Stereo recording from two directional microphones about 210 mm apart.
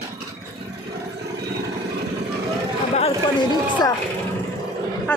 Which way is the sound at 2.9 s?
25° left (ahead or behind).